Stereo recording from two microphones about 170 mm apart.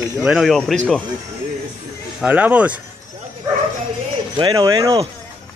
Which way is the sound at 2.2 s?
10° right (ahead or behind).